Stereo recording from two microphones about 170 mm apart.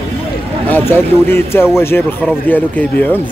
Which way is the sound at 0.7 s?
10° left (ahead or behind).